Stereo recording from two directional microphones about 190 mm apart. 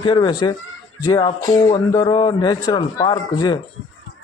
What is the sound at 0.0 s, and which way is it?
A man's voice, 25° left (ahead or behind).